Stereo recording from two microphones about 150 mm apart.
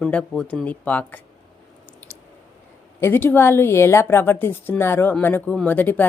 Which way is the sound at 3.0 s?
15° left (ahead or behind).